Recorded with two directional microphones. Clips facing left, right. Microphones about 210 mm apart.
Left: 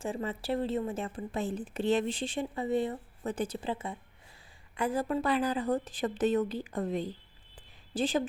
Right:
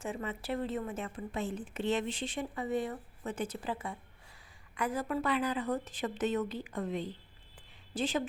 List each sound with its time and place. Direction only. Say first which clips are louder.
0.0 s a woman's voice: left 3 dB; 30° left (ahead or behind)